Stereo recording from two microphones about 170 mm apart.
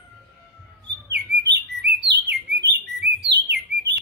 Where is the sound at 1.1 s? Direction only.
75° right (ahead or behind).